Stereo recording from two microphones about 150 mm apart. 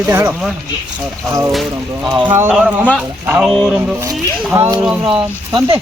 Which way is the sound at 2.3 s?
10° right (ahead or behind).